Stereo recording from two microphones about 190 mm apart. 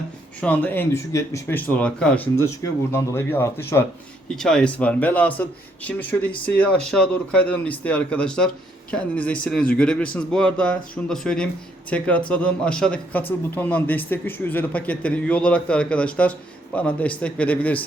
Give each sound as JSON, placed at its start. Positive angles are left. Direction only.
{"t": 0.4, "sound": "speech", "side_deg": 10}